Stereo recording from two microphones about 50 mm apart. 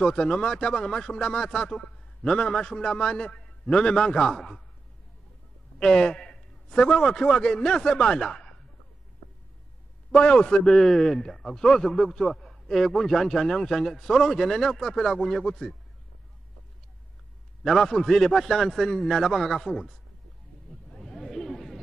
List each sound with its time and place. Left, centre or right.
0.0 s speech: centre
5.8 s a man's voice: centre
10.1 s speech: left
10.7 s speech: centre
17.6 s speech: centre
20.9 s chatter: centre